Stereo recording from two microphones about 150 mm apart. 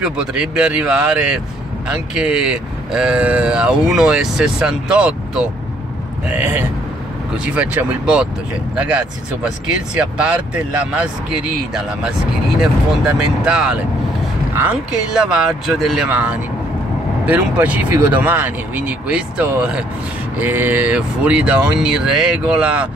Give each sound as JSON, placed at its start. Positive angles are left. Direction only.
{"t": 0.0, "sound": "speech", "side_deg": -5}
{"t": 12.5, "sound": "speech", "side_deg": -5}
{"t": 15.1, "sound": "speech", "side_deg": -5}